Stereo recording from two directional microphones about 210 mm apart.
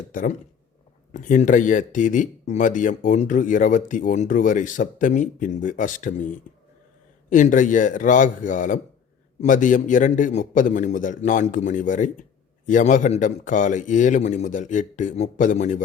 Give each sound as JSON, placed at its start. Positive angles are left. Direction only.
{"t": 0.1, "sound": "speech", "side_deg": 40}
{"t": 6.5, "sound": "a sound", "side_deg": 35}
{"t": 7.3, "sound": "speech", "side_deg": 35}